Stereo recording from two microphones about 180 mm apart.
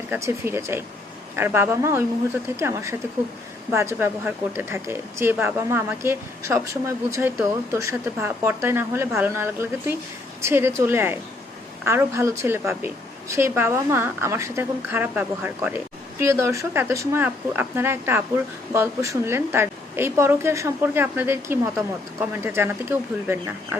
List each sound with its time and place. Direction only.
0.1 s speech: 15° right (ahead or behind)